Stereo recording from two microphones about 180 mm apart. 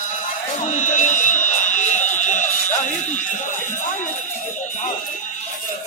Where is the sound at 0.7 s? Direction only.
45° left (ahead or behind).